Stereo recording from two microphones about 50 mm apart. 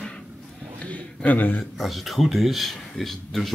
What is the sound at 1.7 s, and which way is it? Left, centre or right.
Speech, centre.